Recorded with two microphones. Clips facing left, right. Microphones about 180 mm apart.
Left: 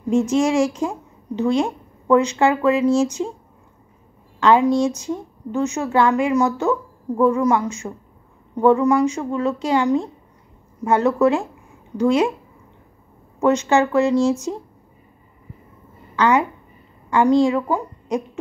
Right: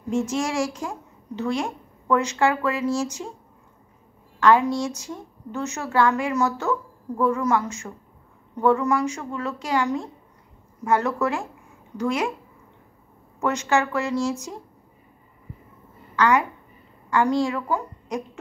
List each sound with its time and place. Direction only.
0.1 s a woman's voice: 20° left (ahead or behind)
4.4 s a woman's voice: 20° left (ahead or behind)
13.4 s a woman's voice: 25° left (ahead or behind)
16.2 s a woman's voice: 25° left (ahead or behind)